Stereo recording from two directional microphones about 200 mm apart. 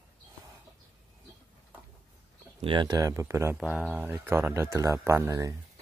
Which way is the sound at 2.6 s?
20° right (ahead or behind).